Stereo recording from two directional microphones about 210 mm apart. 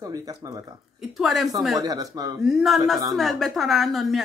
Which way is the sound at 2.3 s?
Centre (ahead or behind).